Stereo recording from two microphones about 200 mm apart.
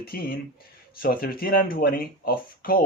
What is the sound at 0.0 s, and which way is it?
Speech, 50° left (ahead or behind).